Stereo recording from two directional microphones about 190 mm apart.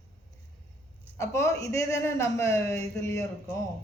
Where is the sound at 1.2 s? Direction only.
15° left (ahead or behind).